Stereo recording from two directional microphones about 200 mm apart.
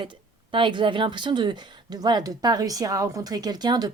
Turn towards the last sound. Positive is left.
turn(degrees=-20)  # may be behind; listen again after turning